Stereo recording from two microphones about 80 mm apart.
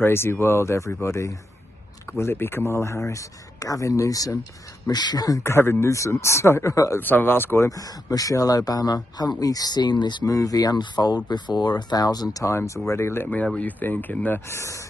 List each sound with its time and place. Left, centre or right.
0.0 s speech: left
4.8 s speech: left
5.4 s speech: left
7.0 s speech: left
7.5 s speech: left
10.2 s speech: left
14.5 s speech: left